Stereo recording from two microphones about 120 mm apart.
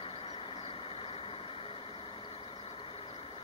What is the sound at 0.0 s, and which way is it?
Vehicle, 50° left (ahead or behind).